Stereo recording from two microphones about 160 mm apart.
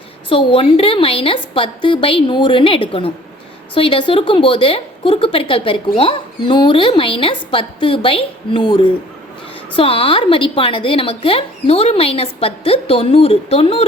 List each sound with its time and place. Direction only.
0.3 s a woman's voice: 35° left (ahead or behind)